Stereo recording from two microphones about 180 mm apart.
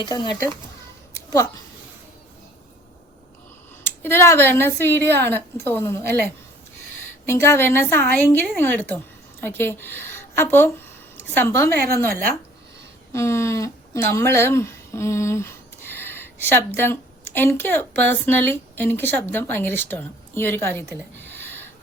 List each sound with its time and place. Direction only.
0.0 s speech: 20° left (ahead or behind)
3.8 s speech: 15° left (ahead or behind)
7.3 s a woman's voice: 15° left (ahead or behind)
11.7 s speech: 55° right (ahead or behind)
13.1 s speech: 15° left (ahead or behind)
21.3 s a sound: 10° left (ahead or behind)